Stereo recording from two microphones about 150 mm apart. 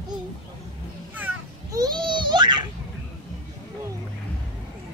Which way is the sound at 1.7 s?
30° right (ahead or behind).